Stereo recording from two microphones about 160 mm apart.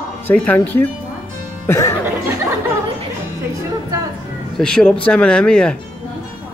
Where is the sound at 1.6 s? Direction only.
15° left (ahead or behind).